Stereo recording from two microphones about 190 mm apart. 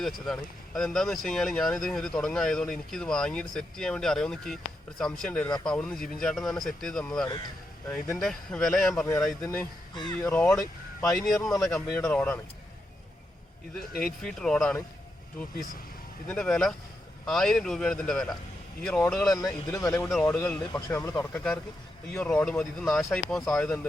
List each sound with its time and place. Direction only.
0.0 s speech: centre (ahead or behind)
9.5 s speech: 20° left (ahead or behind)
10.3 s speech: 5° left (ahead or behind)
13.9 s speech: centre (ahead or behind)
16.3 s speech: 5° left (ahead or behind)